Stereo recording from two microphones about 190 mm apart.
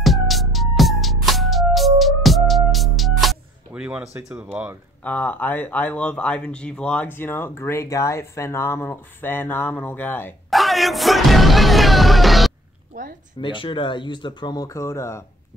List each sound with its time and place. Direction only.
0.0 s music: centre (ahead or behind)
4.2 s speech: 15° right (ahead or behind)
5.0 s speech: 10° left (ahead or behind)
10.5 s music: centre (ahead or behind)
12.9 s speech: 45° right (ahead or behind)
13.4 s speech: 25° left (ahead or behind)